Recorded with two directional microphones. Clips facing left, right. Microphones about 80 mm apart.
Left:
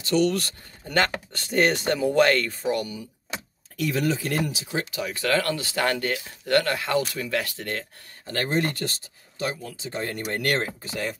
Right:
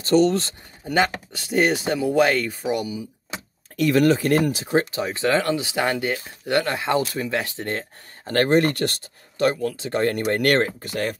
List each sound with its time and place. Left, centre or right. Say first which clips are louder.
0.0 s speech: right 5 dB; right
0.8 s speech: right 3 dB; centre
3.7 s speech: right 7 dB; right
8.3 s speech: right 7 dB; right